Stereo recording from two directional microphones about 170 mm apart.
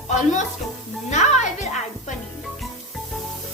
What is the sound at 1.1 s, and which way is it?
Music, 45° left (ahead or behind).